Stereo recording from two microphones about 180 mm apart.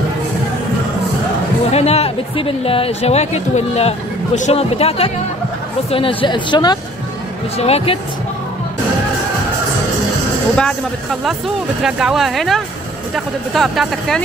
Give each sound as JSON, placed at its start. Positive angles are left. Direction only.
{"t": 1.7, "sound": "speech", "side_deg": 35}
{"t": 10.5, "sound": "speech", "side_deg": 5}